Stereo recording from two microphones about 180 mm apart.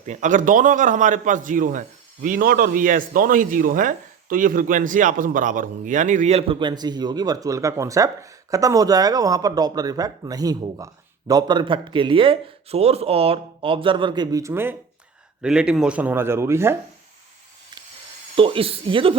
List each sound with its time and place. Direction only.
0.0 s a man's voice: 45° right (ahead or behind); by 16.7 s 15° right (ahead or behind)
18.3 s speech: 30° right (ahead or behind)